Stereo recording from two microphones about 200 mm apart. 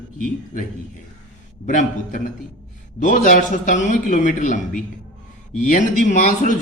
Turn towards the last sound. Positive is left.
turn(degrees=40)  # may be behind; listen again after turning